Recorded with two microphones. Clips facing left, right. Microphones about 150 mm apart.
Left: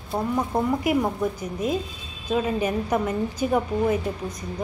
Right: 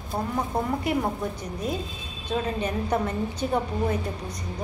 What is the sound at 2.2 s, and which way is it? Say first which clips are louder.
A woman's voice: left 4 dB; 10° left (ahead or behind).